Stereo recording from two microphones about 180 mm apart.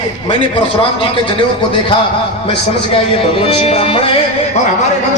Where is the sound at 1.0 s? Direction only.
30° left (ahead or behind).